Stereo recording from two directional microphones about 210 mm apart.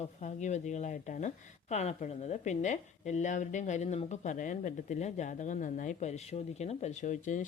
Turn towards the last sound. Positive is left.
turn(degrees=35)  # may be behind; listen again after turning